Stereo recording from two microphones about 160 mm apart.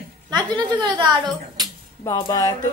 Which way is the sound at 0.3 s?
30° right (ahead or behind).